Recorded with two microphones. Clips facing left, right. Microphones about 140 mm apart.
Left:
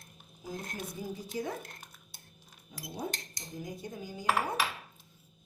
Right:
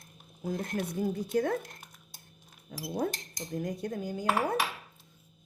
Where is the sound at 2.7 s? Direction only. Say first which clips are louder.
Right 7 dB; 70° right (ahead or behind).